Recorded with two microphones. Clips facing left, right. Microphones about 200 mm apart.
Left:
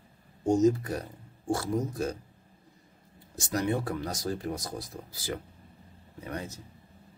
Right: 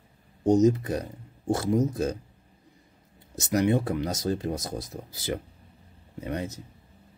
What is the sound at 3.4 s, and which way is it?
Speech, 20° right (ahead or behind).